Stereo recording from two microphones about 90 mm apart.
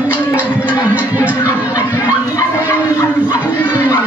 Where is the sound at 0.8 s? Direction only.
20° right (ahead or behind).